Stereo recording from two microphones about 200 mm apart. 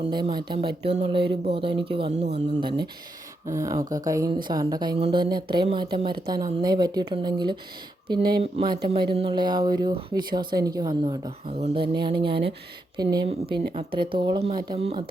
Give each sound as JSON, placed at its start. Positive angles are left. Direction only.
{"t": 0.1, "sound": "speech", "side_deg": -20}
{"t": 3.4, "sound": "speech", "side_deg": -15}
{"t": 11.4, "sound": "speech", "side_deg": -30}